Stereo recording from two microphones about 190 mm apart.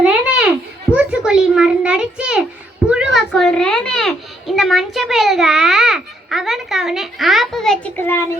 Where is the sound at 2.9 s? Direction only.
5° right (ahead or behind).